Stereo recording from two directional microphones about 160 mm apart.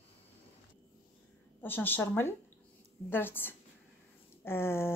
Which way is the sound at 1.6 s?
10° left (ahead or behind).